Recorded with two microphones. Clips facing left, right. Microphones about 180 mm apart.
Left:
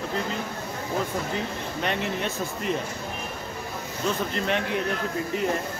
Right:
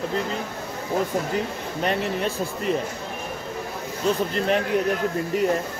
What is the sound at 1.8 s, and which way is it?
Speech, 35° right (ahead or behind).